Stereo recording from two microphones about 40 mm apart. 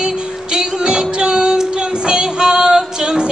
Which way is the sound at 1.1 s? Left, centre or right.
Right.